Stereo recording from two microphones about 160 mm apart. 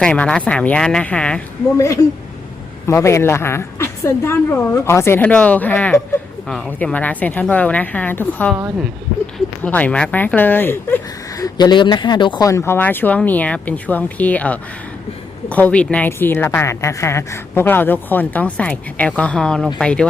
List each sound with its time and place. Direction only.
0.0 s speech: 5° left (ahead or behind)
1.8 s speech: 20° left (ahead or behind)
9.6 s speech: 10° left (ahead or behind)